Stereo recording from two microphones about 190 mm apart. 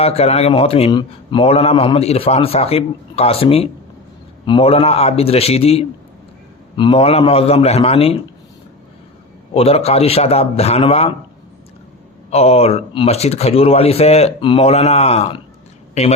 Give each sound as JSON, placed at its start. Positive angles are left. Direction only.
{"t": 0.0, "sound": "a man's voice", "side_deg": 30}
{"t": 9.6, "sound": "a man's voice", "side_deg": 30}
{"t": 12.3, "sound": "a man's voice", "side_deg": 35}